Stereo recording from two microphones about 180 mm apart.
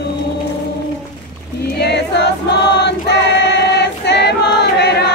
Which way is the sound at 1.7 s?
70° left (ahead or behind).